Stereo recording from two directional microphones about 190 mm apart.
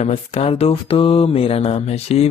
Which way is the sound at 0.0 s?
35° left (ahead or behind).